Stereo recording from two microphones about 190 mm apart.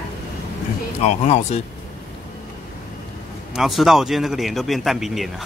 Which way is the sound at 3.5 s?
Centre (ahead or behind).